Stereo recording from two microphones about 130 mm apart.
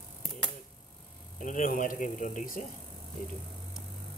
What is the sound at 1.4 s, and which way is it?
Speech, 90° left.